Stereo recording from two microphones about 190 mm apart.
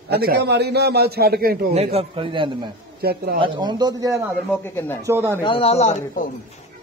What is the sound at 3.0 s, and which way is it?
Speech, 55° right (ahead or behind).